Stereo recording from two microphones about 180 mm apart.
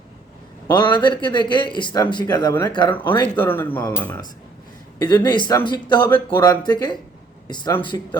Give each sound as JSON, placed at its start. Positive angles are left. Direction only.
{"t": 0.7, "sound": "a man's voice", "side_deg": 25}
{"t": 3.3, "sound": "speech", "side_deg": 10}
{"t": 5.0, "sound": "a man's voice", "side_deg": 25}